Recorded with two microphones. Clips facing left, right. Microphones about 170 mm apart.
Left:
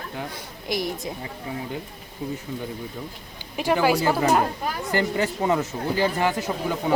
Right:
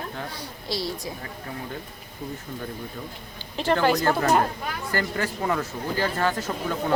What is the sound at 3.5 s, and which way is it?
Speech, 10° left (ahead or behind).